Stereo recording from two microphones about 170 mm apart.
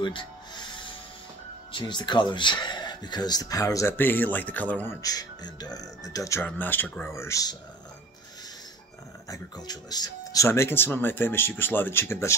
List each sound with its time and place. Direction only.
0.0 s music: 30° left (ahead or behind)
1.7 s speech: 25° left (ahead or behind); by 4.9 s 10° left (ahead or behind)
5.0 s speech: 25° left (ahead or behind)
9.3 s speech: 25° left (ahead or behind)